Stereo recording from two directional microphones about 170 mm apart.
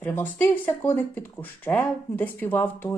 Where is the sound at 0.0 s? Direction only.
10° left (ahead or behind).